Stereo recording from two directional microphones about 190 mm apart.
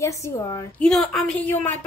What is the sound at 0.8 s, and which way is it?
Speech, 5° left (ahead or behind).